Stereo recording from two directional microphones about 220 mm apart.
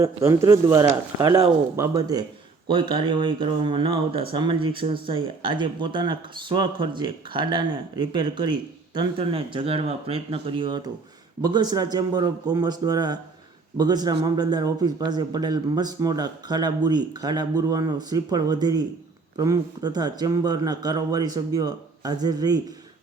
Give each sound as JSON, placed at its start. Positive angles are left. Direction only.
{"t": 0.0, "sound": "a man's voice", "side_deg": -15}